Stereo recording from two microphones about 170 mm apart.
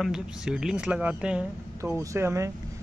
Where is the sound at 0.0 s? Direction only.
5° right (ahead or behind).